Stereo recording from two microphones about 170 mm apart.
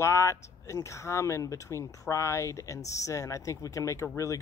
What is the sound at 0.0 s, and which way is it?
Speech, 15° left (ahead or behind).